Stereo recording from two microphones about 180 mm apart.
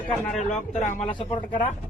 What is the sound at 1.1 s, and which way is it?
Speech, 30° left (ahead or behind).